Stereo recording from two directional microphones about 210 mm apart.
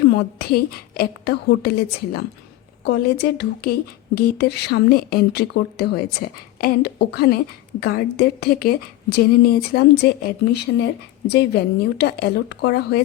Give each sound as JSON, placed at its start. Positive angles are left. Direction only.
{"t": 0.2, "sound": "speech", "side_deg": 50}